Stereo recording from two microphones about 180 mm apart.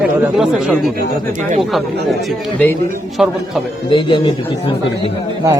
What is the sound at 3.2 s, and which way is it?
Speech, 5° right (ahead or behind).